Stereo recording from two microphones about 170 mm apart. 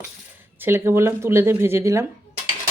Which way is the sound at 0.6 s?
15° right (ahead or behind).